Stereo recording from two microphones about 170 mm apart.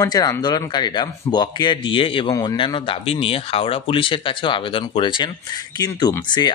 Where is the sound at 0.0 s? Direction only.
20° left (ahead or behind).